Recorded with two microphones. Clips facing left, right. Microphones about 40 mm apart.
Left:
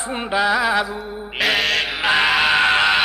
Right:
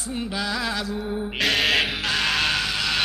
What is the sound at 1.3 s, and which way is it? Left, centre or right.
Music, centre.